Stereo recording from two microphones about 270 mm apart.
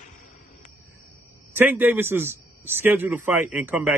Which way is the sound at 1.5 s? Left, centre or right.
Centre.